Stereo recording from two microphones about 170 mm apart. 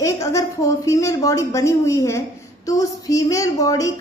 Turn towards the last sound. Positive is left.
turn(degrees=20)  # may be behind; listen again after turning